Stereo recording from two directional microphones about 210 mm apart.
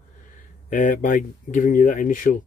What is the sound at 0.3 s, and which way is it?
Speech, 35° left (ahead or behind).